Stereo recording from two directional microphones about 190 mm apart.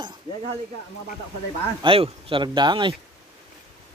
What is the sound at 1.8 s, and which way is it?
Speech, 30° right (ahead or behind).